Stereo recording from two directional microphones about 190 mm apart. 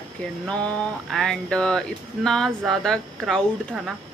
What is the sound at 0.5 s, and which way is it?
Speech, 5° left (ahead or behind).